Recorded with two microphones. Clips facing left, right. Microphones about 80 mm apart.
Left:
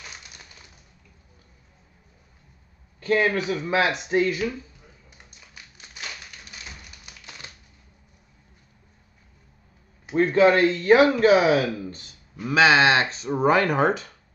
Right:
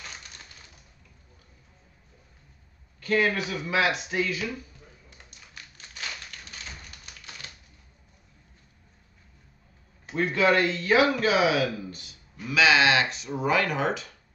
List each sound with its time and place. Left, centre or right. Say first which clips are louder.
3.0 s speech: left 3 dB; left
5.1 s a sound: even; centre
7.4 s typewriter: left 1 dB; left
10.1 s speech: left 5 dB; left